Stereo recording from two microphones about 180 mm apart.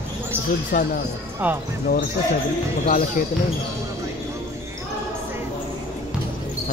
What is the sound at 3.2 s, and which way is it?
Speech, 50° left (ahead or behind).